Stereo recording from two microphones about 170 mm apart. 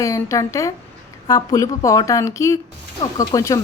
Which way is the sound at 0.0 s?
20° left (ahead or behind).